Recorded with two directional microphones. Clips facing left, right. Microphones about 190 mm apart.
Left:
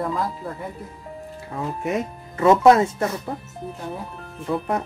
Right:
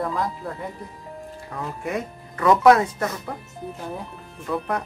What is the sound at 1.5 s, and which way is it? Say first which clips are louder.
Speech: left 3 dB; 25° left (ahead or behind).